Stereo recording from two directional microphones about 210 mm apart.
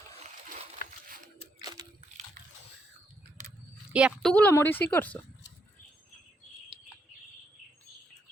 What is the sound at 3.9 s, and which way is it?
Speech, 5° right (ahead or behind).